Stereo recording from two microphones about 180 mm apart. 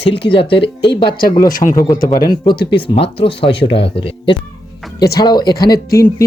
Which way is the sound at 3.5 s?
70° left (ahead or behind).